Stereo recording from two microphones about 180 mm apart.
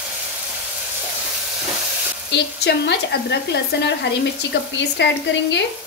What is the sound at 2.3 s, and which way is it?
Speech, 70° left (ahead or behind).